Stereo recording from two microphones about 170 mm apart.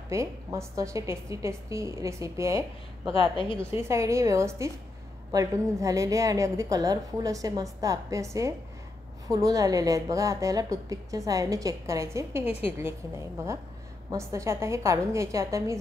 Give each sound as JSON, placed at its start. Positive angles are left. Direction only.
{"t": 0.1, "sound": "a woman's voice", "side_deg": -15}
{"t": 3.1, "sound": "speech", "side_deg": 30}
{"t": 3.7, "sound": "a woman's voice", "side_deg": -15}
{"t": 14.1, "sound": "a woman's voice", "side_deg": -15}